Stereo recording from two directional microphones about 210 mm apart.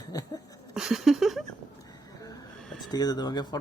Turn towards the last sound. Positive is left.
turn(degrees=20)  # may be behind; listen again after turning